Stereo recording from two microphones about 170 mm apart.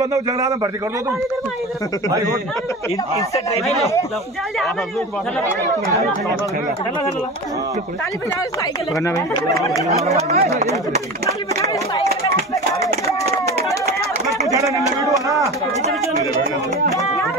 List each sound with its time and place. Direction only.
0.0 s a man's voice: 20° right (ahead or behind)
10.1 s speech: 40° right (ahead or behind)
14.5 s a sound: 20° right (ahead or behind)
15.1 s a man's voice: 20° right (ahead or behind)